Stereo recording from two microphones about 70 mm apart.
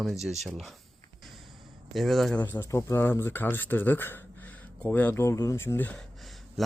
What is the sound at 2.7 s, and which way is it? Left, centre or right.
Speech, left.